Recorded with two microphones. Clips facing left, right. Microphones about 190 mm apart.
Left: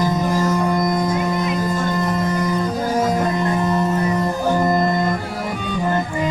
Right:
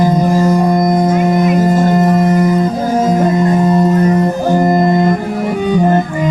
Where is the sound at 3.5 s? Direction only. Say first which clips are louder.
Right 8 dB; 35° right (ahead or behind).